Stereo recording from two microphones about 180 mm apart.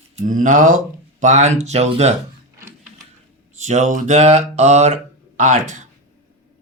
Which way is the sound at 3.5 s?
40° right (ahead or behind).